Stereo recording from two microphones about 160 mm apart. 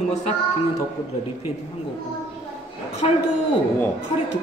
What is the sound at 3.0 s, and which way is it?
Speech, 35° left (ahead or behind).